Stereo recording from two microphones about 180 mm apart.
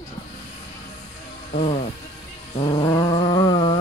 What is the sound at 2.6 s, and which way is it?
Cat, 30° left (ahead or behind).